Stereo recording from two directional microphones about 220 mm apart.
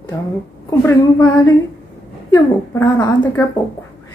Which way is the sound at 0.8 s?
10° left (ahead or behind).